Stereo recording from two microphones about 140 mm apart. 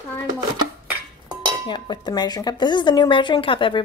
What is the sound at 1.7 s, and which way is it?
A woman's voice, 30° left (ahead or behind).